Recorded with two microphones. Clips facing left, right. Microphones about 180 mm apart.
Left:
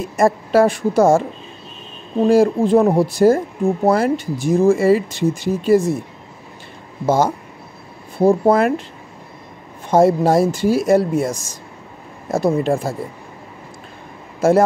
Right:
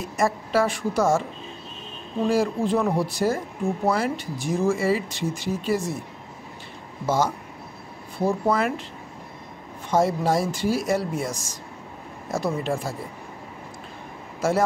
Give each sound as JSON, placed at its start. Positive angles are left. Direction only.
{"t": 0.2, "sound": "speech", "side_deg": 50}
{"t": 7.1, "sound": "speech", "side_deg": 55}
{"t": 9.8, "sound": "speech", "side_deg": 55}